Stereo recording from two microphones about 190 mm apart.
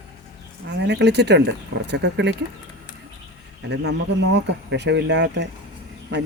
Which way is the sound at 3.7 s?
65° right (ahead or behind).